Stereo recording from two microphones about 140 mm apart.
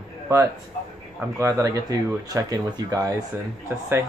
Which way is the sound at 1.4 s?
25° right (ahead or behind).